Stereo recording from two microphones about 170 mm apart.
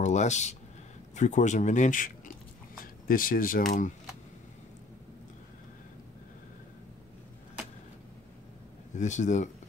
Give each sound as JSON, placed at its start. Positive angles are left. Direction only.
{"t": 0.0, "sound": "speech", "side_deg": 45}
{"t": 8.9, "sound": "speech", "side_deg": 45}